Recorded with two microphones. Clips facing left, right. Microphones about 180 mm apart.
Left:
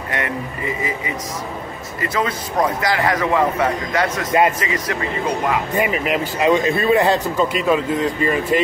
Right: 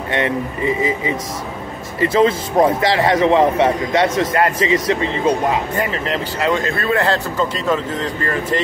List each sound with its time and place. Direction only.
0.1 s a man's voice: 25° right (ahead or behind)
4.3 s speech: 20° left (ahead or behind)
4.6 s a man's voice: 25° right (ahead or behind)
5.8 s speech: 15° left (ahead or behind)